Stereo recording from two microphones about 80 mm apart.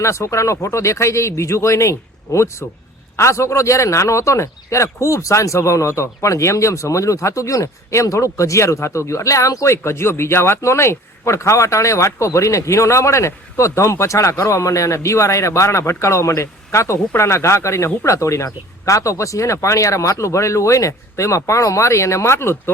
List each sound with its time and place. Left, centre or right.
0.0 s a man's voice: left